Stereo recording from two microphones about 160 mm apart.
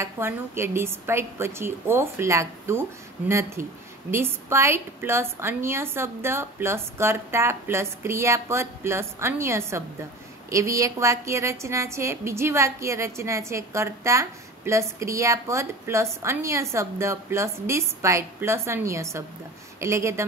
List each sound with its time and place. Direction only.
0.0 s a woman's voice: 15° right (ahead or behind)